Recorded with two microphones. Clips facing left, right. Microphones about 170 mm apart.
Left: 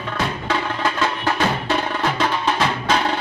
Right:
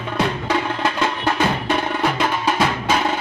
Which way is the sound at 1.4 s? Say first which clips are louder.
Right 1 dB; 15° right (ahead or behind).